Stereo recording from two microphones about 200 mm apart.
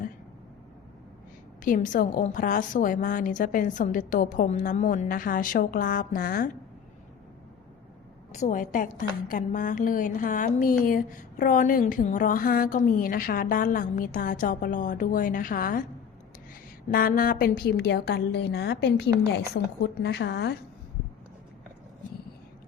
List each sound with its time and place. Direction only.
1.6 s a woman's voice: 40° left (ahead or behind)
8.3 s a woman's voice: 35° left (ahead or behind)
16.9 s a woman's voice: 45° left (ahead or behind)